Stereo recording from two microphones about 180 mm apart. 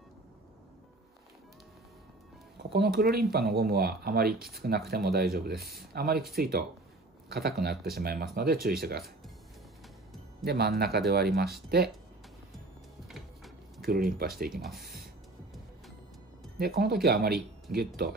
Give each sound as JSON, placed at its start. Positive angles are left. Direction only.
{"t": 2.7, "sound": "speech", "side_deg": -60}
{"t": 5.5, "sound": "speech", "side_deg": 0}
{"t": 5.9, "sound": "speech", "side_deg": -60}
{"t": 10.4, "sound": "speech", "side_deg": -60}
{"t": 13.1, "sound": "music", "side_deg": 0}
{"t": 13.8, "sound": "speech", "side_deg": -55}
{"t": 14.5, "sound": "speech", "side_deg": 0}
{"t": 16.5, "sound": "speech", "side_deg": -60}